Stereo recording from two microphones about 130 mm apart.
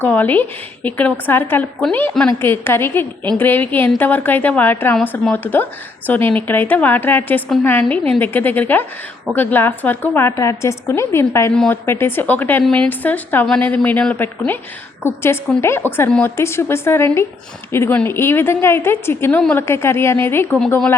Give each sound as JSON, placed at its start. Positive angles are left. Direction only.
{"t": 0.0, "sound": "a woman's voice", "side_deg": 15}
{"t": 16.0, "sound": "a woman's voice", "side_deg": 5}
{"t": 16.4, "sound": "a woman's voice", "side_deg": 20}